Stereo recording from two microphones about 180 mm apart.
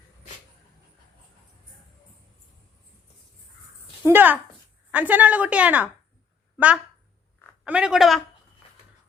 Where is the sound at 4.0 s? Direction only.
10° right (ahead or behind).